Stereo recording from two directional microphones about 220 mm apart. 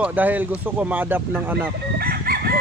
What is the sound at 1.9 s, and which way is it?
Chicken, 45° right (ahead or behind).